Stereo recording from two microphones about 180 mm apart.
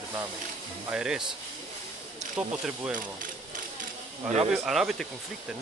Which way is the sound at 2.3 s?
5° right (ahead or behind).